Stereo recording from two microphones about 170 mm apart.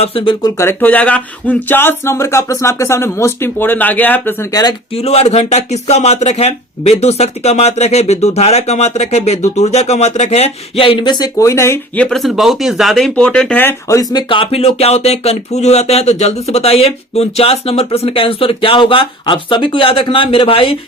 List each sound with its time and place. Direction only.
0.0 s speech: 35° left (ahead or behind)
0.6 s speech: 15° left (ahead or behind)
4.9 s speech: 35° left (ahead or behind); by 12.0 s 15° left (ahead or behind)
12.0 s speech: centre (ahead or behind); by 20.7 s 30° left (ahead or behind)